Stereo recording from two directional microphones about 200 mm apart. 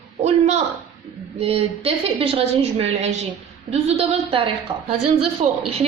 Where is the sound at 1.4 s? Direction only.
30° right (ahead or behind).